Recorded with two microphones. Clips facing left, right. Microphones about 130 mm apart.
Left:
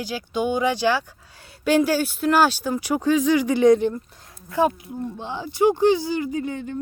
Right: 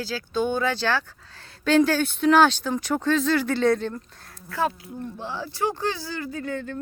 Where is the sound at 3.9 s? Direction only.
15° left (ahead or behind).